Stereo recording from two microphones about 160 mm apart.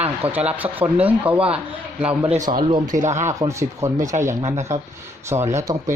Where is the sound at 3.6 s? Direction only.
20° right (ahead or behind).